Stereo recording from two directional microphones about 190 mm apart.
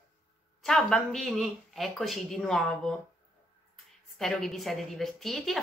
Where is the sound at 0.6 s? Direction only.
Centre (ahead or behind).